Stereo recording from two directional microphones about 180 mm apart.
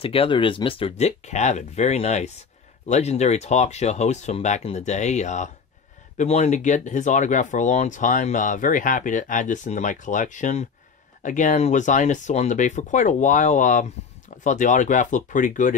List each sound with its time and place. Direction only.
0.0 s speech: 30° left (ahead or behind)